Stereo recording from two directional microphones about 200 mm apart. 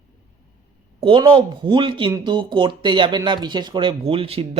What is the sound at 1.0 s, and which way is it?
Speech, 25° right (ahead or behind).